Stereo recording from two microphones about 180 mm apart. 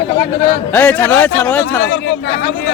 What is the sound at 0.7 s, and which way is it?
Speech, 10° left (ahead or behind).